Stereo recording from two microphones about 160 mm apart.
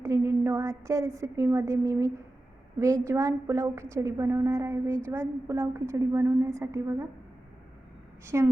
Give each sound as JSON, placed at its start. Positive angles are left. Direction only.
{"t": 0.0, "sound": "a woman's voice", "side_deg": -20}
{"t": 8.3, "sound": "a woman's voice", "side_deg": -15}